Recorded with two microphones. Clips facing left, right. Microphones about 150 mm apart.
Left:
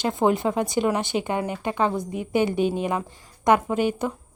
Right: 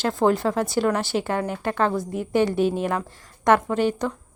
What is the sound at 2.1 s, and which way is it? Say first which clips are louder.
A woman's voice: right 1 dB; centre (ahead or behind).